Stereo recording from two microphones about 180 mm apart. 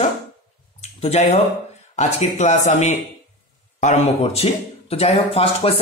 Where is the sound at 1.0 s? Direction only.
35° left (ahead or behind).